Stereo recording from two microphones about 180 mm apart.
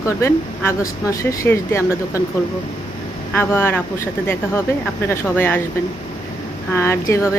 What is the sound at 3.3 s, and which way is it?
Speech, 10° left (ahead or behind).